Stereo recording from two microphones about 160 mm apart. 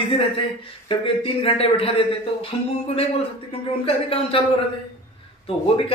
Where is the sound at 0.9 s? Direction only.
35° left (ahead or behind).